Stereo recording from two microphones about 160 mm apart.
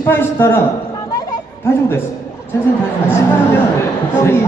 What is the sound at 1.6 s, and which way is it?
Speech, 15° left (ahead or behind).